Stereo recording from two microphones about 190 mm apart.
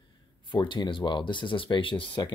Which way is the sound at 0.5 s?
25° left (ahead or behind).